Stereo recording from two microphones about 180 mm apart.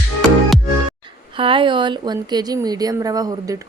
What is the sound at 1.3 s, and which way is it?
A woman's voice, 30° right (ahead or behind).